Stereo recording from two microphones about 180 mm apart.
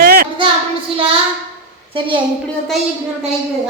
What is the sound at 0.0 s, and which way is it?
Child singing, 55° right (ahead or behind).